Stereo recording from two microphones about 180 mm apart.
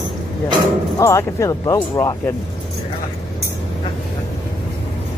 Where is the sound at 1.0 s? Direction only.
15° left (ahead or behind).